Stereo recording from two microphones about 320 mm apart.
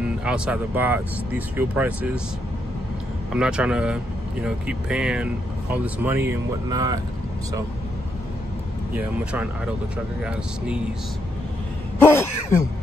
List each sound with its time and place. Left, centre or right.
0.2 s speech: centre
3.3 s speech: centre
8.9 s speech: centre
12.0 s throat clearing: centre